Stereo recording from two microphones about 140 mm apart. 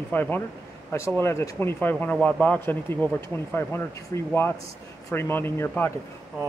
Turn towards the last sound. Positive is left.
turn(degrees=15)  # may be behind; listen again after turning